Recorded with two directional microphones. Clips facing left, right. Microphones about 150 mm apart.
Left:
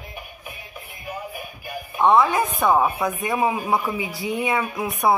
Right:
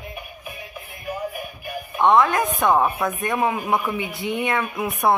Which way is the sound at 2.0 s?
10° left (ahead or behind).